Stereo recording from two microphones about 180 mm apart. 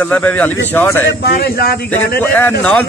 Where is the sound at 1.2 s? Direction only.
60° left (ahead or behind).